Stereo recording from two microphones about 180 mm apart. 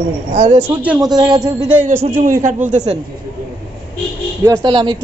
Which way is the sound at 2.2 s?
45° right (ahead or behind).